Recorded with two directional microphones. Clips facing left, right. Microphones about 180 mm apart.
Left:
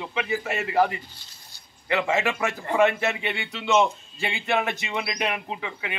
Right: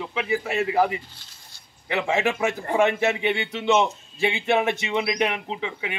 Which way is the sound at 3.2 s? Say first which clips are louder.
Right 6 dB; 20° right (ahead or behind).